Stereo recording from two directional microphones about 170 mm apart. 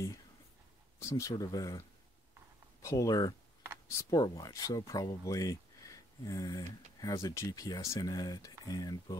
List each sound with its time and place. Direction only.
0.9 s speech: 15° left (ahead or behind)